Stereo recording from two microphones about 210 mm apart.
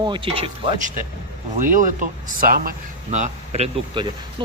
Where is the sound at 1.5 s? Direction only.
40° right (ahead or behind).